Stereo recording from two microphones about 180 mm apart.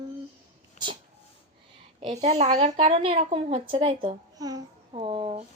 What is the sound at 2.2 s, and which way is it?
A child's voice, 40° right (ahead or behind).